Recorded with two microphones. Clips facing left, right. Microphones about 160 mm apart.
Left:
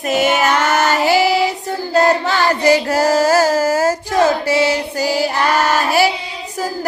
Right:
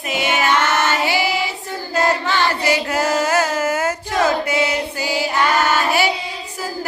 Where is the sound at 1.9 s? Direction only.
40° left (ahead or behind).